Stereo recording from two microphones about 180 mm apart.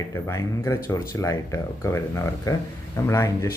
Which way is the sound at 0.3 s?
15° left (ahead or behind).